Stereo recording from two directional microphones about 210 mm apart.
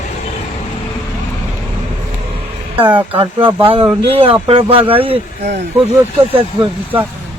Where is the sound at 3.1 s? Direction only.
25° right (ahead or behind).